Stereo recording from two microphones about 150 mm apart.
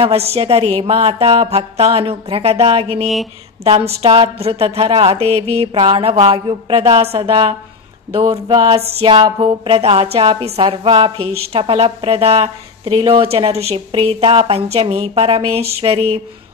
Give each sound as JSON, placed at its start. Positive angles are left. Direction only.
{"t": 0.0, "sound": "a woman's voice", "side_deg": -40}